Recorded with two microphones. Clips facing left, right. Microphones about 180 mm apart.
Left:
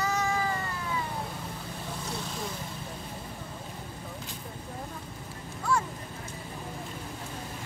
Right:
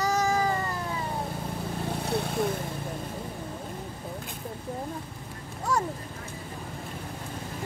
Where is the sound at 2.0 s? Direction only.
60° right (ahead or behind).